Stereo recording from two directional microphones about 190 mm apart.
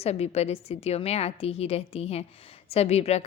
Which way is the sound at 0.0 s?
35° left (ahead or behind).